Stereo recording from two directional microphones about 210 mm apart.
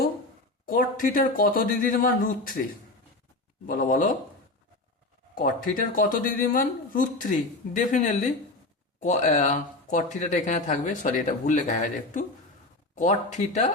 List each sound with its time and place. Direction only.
0.6 s speech: 40° left (ahead or behind)
3.7 s speech: 40° left (ahead or behind)
5.3 s speech: 40° left (ahead or behind)